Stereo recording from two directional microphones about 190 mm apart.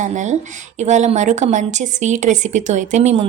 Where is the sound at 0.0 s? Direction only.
40° right (ahead or behind).